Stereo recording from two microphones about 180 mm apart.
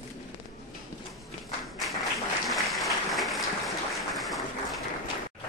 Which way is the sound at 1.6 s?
Centre (ahead or behind).